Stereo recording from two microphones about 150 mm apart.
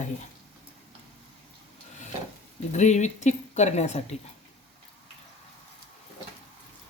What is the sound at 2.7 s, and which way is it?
Speech, 50° left (ahead or behind).